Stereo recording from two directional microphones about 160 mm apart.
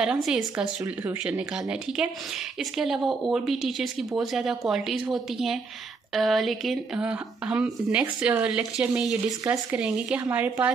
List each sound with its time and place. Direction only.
0.0 s a woman's voice: 5° right (ahead or behind)